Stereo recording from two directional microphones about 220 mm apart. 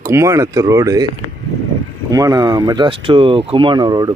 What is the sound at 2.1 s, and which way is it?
Speech, 15° right (ahead or behind).